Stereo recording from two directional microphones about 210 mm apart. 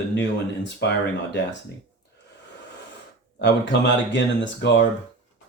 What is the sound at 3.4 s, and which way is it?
Speech, 55° left (ahead or behind).